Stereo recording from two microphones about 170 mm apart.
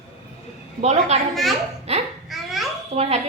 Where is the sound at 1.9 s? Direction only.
40° right (ahead or behind).